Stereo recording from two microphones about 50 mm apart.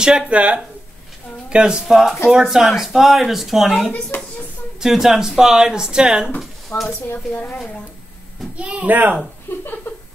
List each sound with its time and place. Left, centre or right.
0.0 s speech: centre
0.3 s a child's voice: right
6.7 s speech: left
8.5 s a child's voice: right